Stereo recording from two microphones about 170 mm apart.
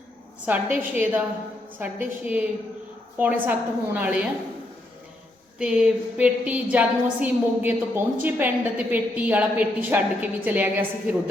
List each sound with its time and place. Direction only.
0.4 s a woman's voice: 10° right (ahead or behind)
5.5 s a woman's voice: 5° right (ahead or behind)